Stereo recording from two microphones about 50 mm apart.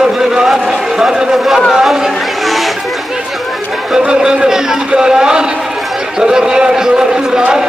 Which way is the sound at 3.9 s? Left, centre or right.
Centre.